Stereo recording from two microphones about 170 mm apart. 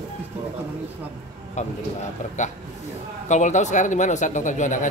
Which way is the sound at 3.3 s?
45° left (ahead or behind).